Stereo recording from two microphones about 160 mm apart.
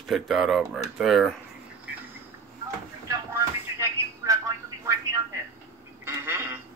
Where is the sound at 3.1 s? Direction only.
15° right (ahead or behind).